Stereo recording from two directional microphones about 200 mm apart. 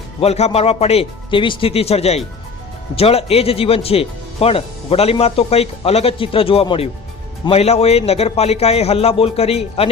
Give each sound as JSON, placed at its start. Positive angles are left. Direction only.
{"t": 0.2, "sound": "a man's voice", "side_deg": 30}